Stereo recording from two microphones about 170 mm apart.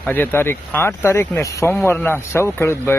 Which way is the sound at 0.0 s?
10° left (ahead or behind).